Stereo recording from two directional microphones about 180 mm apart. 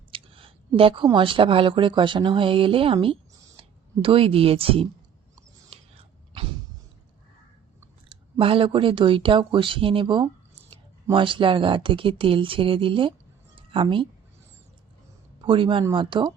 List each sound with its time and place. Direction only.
0.1 s a sound: 30° right (ahead or behind)
0.8 s a woman's voice: 30° right (ahead or behind)
8.1 s a woman's voice: 30° right (ahead or behind)
15.4 s speech: 30° right (ahead or behind)